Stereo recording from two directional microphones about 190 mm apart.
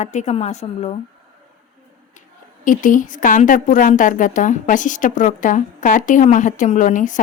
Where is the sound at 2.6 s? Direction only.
45° left (ahead or behind).